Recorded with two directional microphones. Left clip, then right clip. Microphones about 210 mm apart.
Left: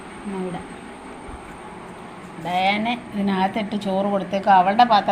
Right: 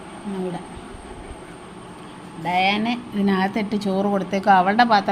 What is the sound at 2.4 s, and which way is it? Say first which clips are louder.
A woman's voice: right 1 dB; 20° right (ahead or behind).